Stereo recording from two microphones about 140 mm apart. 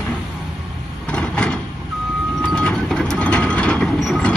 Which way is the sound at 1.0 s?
5° left (ahead or behind).